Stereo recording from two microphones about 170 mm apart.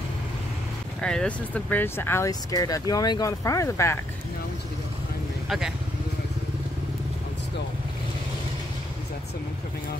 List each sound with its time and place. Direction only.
1.0 s speech: 5° left (ahead or behind)